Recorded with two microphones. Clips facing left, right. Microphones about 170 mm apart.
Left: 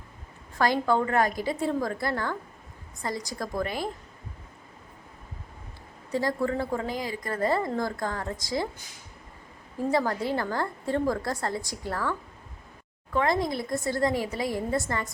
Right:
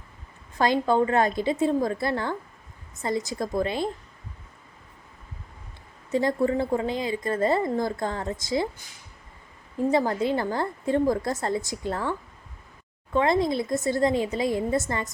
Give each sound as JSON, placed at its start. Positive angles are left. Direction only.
{"t": 0.6, "sound": "a woman's voice", "side_deg": -20}
{"t": 6.1, "sound": "a woman's voice", "side_deg": -20}
{"t": 9.7, "sound": "a woman's voice", "side_deg": -20}
{"t": 13.1, "sound": "a woman's voice", "side_deg": -25}